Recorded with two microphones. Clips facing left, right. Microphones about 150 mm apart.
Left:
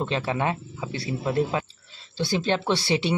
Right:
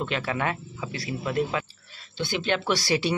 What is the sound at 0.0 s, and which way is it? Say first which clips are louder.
Speech: left 2 dB; 30° left (ahead or behind).